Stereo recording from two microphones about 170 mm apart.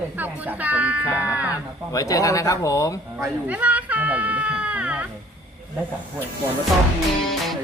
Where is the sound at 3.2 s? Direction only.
10° right (ahead or behind).